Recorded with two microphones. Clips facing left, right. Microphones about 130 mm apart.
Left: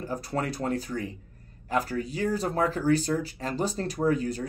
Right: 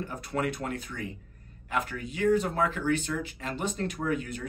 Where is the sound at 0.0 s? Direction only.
35° left (ahead or behind).